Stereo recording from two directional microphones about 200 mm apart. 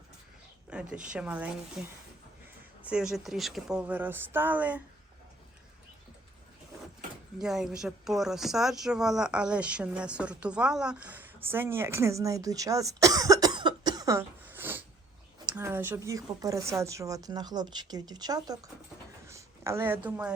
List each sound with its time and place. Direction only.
0.7 s a woman's voice: 5° right (ahead or behind)
7.3 s a woman's voice: centre (ahead or behind); by 18.6 s 20° right (ahead or behind)
19.3 s a sound: 15° right (ahead or behind)
20.1 s speech: 10° right (ahead or behind)